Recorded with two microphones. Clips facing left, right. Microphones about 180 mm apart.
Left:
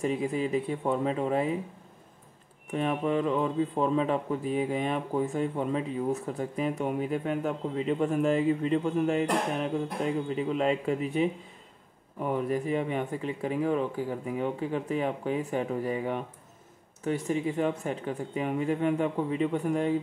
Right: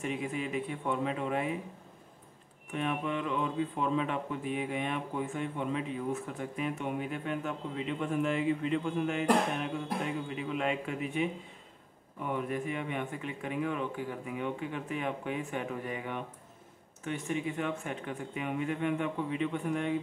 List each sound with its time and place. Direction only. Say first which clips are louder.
0.0 s speech: left 6 dB; 35° left (ahead or behind)
2.7 s speech: left 6 dB; 35° left (ahead or behind)